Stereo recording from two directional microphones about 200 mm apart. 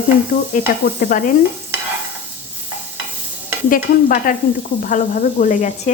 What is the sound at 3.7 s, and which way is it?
A woman's voice, 45° left (ahead or behind).